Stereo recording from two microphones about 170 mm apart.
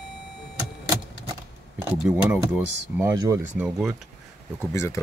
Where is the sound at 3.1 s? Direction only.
20° right (ahead or behind).